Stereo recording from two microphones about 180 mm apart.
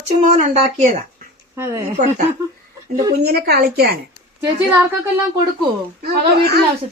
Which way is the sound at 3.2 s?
60° right (ahead or behind).